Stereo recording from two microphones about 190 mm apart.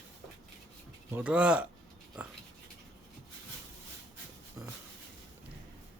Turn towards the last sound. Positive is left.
turn(degrees=-15)  # may be behind; listen again after turning